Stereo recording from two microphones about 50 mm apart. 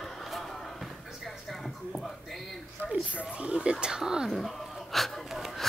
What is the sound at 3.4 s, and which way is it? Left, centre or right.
Speech, right.